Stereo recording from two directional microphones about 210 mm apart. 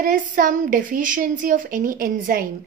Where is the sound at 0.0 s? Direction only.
40° right (ahead or behind).